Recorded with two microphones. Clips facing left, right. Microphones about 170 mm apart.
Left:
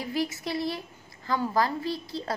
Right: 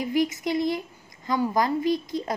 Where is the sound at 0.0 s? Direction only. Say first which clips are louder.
Right 6 dB; 20° right (ahead or behind).